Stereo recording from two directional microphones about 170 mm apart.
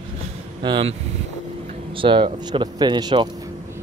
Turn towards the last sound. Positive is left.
turn(degrees=-25)  # may be behind; listen again after turning